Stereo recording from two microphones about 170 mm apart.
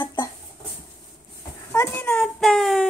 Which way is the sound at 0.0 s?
25° left (ahead or behind).